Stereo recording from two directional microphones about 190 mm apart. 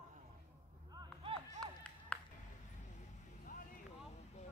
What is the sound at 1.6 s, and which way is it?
Clapping, 5° left (ahead or behind).